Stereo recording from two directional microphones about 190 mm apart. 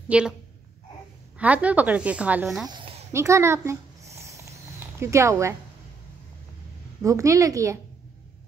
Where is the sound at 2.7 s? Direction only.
30° right (ahead or behind).